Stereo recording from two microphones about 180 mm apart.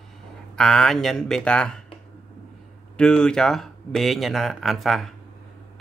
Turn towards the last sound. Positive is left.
turn(degrees=0)  # may be behind; listen again after turning